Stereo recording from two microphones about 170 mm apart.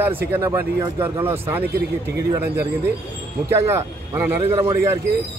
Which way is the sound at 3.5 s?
15° right (ahead or behind).